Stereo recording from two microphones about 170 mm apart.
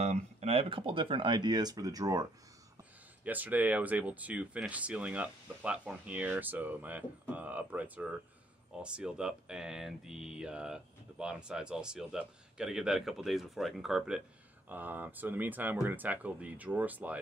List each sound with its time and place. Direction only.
0.0 s speech: 40° right (ahead or behind); by 2.2 s 20° right (ahead or behind)
2.8 s speech: 10° right (ahead or behind)